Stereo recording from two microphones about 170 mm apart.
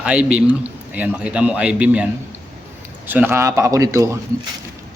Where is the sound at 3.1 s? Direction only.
10° right (ahead or behind).